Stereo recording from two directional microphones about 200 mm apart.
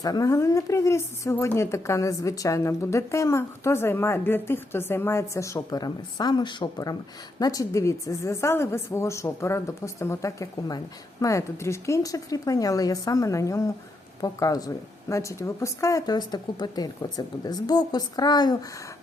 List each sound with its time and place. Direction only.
0.0 s a woman's voice: 15° left (ahead or behind)